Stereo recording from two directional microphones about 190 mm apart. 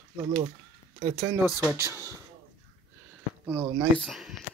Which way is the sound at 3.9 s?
Centre (ahead or behind).